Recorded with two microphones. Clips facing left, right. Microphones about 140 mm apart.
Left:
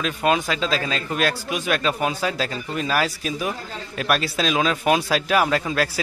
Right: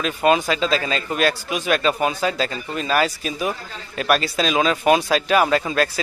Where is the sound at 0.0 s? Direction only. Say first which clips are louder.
Right 3 dB; centre (ahead or behind).